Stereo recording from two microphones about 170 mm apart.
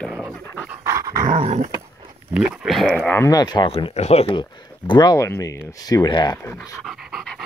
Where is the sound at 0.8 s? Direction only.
20° right (ahead or behind).